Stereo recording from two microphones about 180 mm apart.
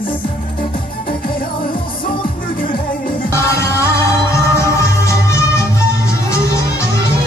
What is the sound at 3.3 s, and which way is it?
Music, 15° left (ahead or behind).